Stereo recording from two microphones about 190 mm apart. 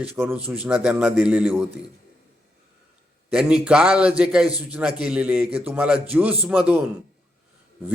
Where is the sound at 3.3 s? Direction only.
5° right (ahead or behind).